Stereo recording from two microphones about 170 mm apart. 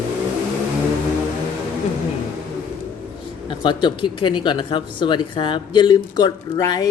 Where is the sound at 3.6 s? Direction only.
25° left (ahead or behind).